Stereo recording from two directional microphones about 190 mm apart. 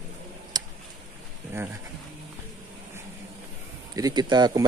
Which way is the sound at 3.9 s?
20° right (ahead or behind).